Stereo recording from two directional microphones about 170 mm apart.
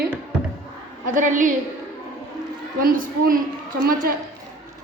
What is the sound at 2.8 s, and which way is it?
Speech, 55° right (ahead or behind).